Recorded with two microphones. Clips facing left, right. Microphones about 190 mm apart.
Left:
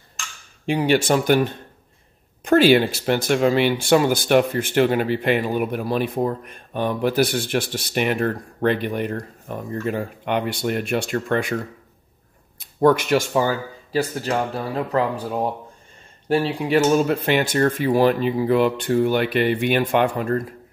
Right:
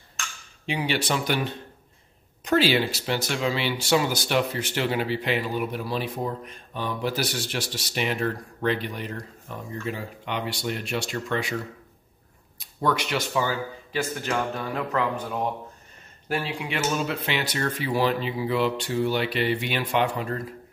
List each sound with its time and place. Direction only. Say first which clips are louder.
0.7 s speech: left 8 dB; 45° left (ahead or behind)
12.5 s a man's voice: left 9 dB; 50° left (ahead or behind)